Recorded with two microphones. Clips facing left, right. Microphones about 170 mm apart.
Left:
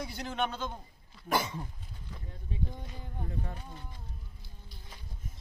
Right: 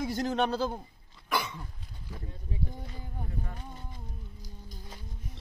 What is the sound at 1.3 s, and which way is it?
Cough, 40° left (ahead or behind).